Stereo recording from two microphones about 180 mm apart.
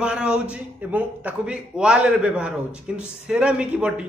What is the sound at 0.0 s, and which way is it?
A man's voice, 5° right (ahead or behind).